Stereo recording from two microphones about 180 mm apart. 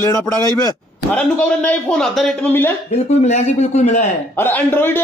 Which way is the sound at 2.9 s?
40° left (ahead or behind).